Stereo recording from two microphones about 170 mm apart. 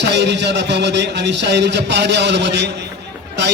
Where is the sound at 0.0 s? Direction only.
90° right.